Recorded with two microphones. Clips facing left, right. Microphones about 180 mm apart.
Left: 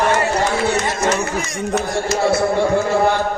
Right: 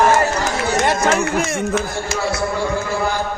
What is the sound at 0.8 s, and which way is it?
Run, 55° right (ahead or behind).